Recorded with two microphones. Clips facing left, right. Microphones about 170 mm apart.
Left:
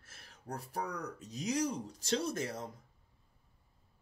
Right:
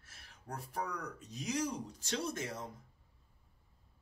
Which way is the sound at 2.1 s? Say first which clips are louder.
Left 4 dB; 35° left (ahead or behind).